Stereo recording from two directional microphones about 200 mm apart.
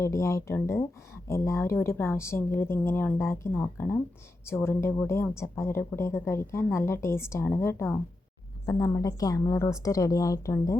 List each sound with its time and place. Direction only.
0.0 s speech: 15° left (ahead or behind)